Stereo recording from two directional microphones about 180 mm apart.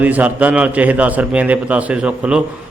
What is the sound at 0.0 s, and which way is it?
A man's voice, 10° right (ahead or behind).